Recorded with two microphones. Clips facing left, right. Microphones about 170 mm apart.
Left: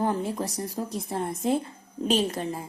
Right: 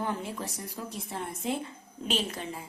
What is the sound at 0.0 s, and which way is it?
A woman's voice, 40° left (ahead or behind).